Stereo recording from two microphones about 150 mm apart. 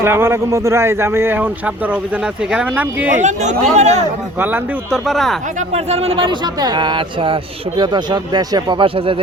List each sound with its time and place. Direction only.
0.0 s speech: 15° right (ahead or behind)
3.2 s speech: 50° right (ahead or behind)
4.4 s speech: 15° right (ahead or behind)
4.9 s speech: centre (ahead or behind)
5.5 s speech: 45° right (ahead or behind)